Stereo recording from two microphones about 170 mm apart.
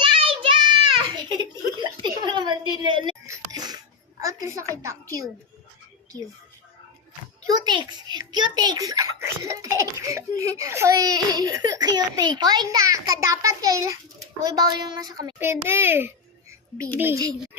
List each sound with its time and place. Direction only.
0.0 s child singing: 30° right (ahead or behind)
2.0 s music: 25° right (ahead or behind)
4.2 s a woman's voice: 20° right (ahead or behind)
7.5 s a child's voice: 25° right (ahead or behind)